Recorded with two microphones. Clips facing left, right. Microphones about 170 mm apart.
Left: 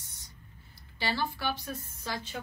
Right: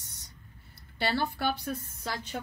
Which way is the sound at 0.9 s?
60° right (ahead or behind).